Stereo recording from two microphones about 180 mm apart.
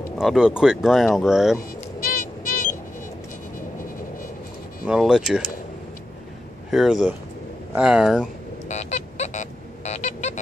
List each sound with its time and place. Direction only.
0.2 s speech: 5° right (ahead or behind)
2.0 s music: 50° left (ahead or behind)
4.8 s speech: 5° right (ahead or behind)
6.7 s speech: centre (ahead or behind)
8.6 s music: 40° left (ahead or behind)